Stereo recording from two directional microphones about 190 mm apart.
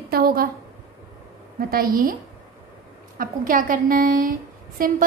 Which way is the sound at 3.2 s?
45° right (ahead or behind).